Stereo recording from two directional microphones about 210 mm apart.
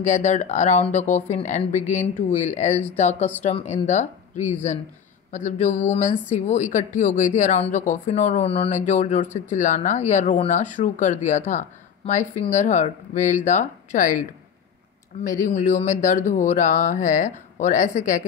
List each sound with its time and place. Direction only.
0.0 s speech: 35° left (ahead or behind)
15.2 s speech: 40° left (ahead or behind)